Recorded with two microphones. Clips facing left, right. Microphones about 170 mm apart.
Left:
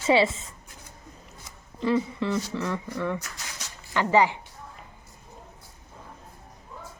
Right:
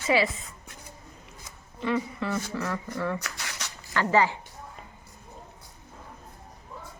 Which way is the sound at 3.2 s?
70° right (ahead or behind).